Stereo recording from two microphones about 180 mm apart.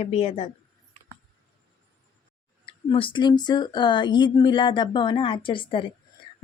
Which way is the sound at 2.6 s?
30° left (ahead or behind).